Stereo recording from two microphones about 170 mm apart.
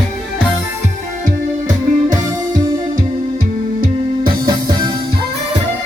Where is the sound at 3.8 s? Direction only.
55° right (ahead or behind).